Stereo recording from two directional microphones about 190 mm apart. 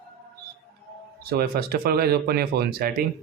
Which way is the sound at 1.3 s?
55° right (ahead or behind).